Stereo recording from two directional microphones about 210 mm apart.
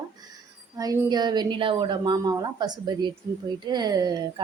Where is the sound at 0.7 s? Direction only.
20° right (ahead or behind).